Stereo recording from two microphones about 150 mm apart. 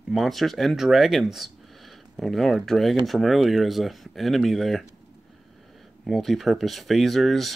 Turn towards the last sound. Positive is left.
turn(degrees=0)  # may be behind; listen again after turning